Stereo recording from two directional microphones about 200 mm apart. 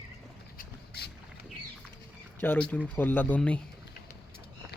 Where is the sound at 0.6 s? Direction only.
55° left (ahead or behind).